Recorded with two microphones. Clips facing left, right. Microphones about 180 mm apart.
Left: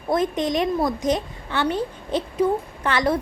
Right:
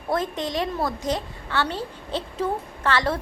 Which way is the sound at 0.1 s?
20° left (ahead or behind).